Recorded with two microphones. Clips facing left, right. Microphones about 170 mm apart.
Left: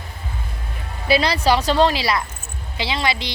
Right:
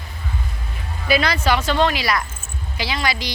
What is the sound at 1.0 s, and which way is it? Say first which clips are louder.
Speech: left 2 dB; 30° left (ahead or behind).